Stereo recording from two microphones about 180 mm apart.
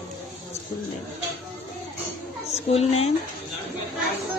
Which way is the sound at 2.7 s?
35° left (ahead or behind).